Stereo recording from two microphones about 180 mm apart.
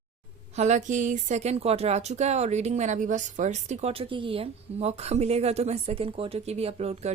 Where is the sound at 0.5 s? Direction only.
40° right (ahead or behind).